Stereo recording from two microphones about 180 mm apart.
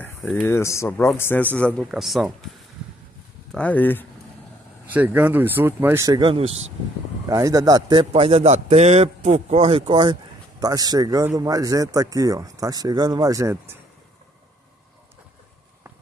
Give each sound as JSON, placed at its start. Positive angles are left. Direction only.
{"t": 0.0, "sound": "a sound", "side_deg": 10}
{"t": 0.5, "sound": "a man's voice", "side_deg": 15}
{"t": 3.5, "sound": "a man's voice", "side_deg": 10}
{"t": 4.8, "sound": "a man's voice", "side_deg": -10}